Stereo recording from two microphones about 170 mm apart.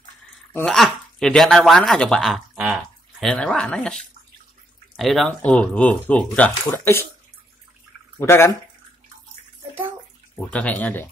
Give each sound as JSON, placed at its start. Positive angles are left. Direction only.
{"t": 0.5, "sound": "speech", "side_deg": 5}
{"t": 8.2, "sound": "speech", "side_deg": 15}
{"t": 10.3, "sound": "speech", "side_deg": 5}